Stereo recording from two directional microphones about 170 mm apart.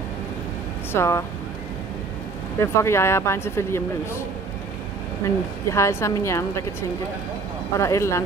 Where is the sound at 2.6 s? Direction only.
15° left (ahead or behind).